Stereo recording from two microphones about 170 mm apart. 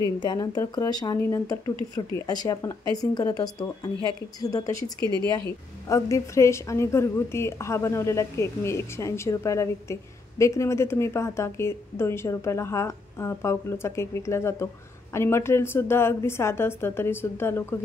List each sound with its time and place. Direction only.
0.2 s a woman's voice: 25° left (ahead or behind)
5.0 s speech: 25° right (ahead or behind)
5.9 s speech: 15° left (ahead or behind)